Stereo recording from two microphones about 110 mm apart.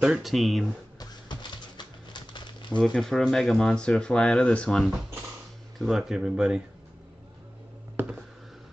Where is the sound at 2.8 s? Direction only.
5° left (ahead or behind).